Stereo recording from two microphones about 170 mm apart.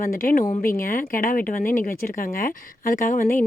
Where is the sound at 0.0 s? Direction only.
55° left (ahead or behind).